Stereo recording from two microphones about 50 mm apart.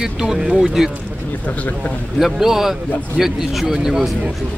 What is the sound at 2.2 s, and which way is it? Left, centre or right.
A man's voice, centre.